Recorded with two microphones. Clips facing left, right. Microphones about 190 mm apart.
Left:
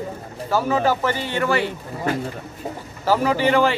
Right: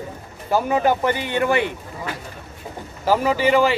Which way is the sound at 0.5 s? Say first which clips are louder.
Right 1 dB; 20° right (ahead or behind).